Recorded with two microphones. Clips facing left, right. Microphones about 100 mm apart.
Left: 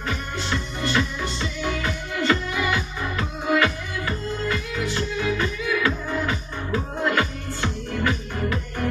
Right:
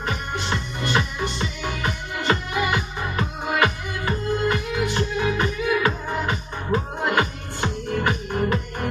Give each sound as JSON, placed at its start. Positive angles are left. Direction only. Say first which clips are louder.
{"t": 0.5, "sound": "music", "louder": "even", "side_deg": -20}